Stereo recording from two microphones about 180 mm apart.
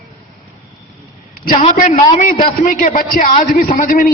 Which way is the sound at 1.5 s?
30° left (ahead or behind).